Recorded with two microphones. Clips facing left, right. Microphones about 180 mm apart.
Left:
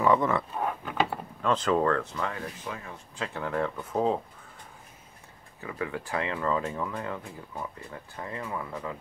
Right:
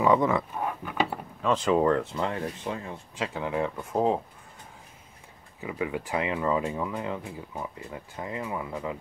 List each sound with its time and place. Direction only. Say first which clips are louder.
0.0 s speech: right 1 dB; 15° right (ahead or behind)
2.1 s speech: right 4 dB; 30° right (ahead or behind)
3.3 s speech: even; 10° right (ahead or behind)
5.6 s speech: right 3 dB; 15° right (ahead or behind)